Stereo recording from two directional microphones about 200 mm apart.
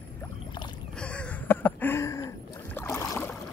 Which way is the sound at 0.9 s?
5° left (ahead or behind).